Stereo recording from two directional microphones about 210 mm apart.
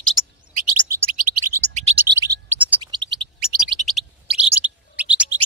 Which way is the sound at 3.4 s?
Centre (ahead or behind).